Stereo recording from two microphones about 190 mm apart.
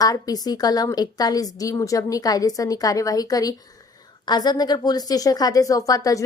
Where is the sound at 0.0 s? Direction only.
20° left (ahead or behind).